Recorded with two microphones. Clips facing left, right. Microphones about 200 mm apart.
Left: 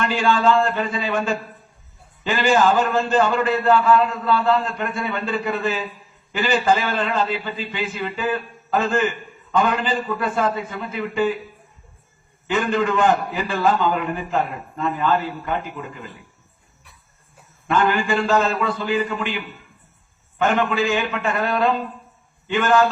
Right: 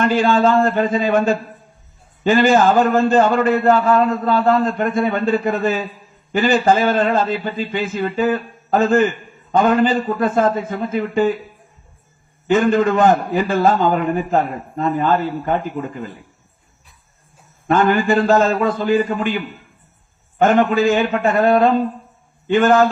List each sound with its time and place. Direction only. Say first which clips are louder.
0.0 s a man's voice: right 4 dB; 45° right (ahead or behind)
12.5 s a man's voice: right 6 dB; 45° right (ahead or behind)
17.7 s a man's voice: right 5 dB; 45° right (ahead or behind)
20.4 s a man's voice: right 6 dB; 45° right (ahead or behind)